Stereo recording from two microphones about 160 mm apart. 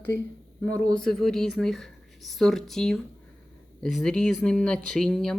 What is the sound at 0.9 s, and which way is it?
Speech, 5° left (ahead or behind).